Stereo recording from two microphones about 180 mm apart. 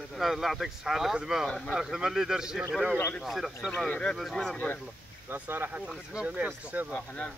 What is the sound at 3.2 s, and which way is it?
Speech, centre (ahead or behind).